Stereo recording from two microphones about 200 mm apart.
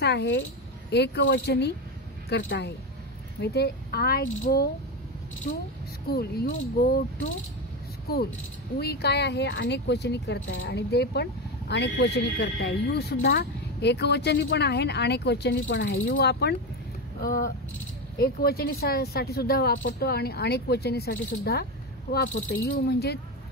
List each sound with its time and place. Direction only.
0.0 s speech: 55° left (ahead or behind)
6.0 s speech: 50° left (ahead or behind)
8.1 s speech: 50° left (ahead or behind)
17.2 s speech: 45° left (ahead or behind)
22.7 s speech: 50° left (ahead or behind)